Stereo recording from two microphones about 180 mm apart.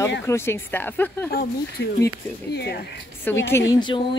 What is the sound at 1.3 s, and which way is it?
Speech, 60° left (ahead or behind).